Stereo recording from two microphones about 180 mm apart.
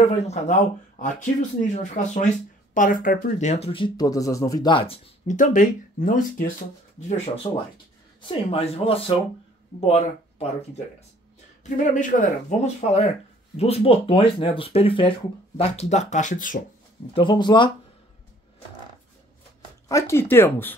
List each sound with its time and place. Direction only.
0.3 s speech: 45° left (ahead or behind)
5.4 s speech: 45° left (ahead or behind)
7.0 s speech: 40° left (ahead or behind)
11.6 s speech: 45° left (ahead or behind)
17.1 s speech: 25° left (ahead or behind)
19.9 s speech: 15° left (ahead or behind)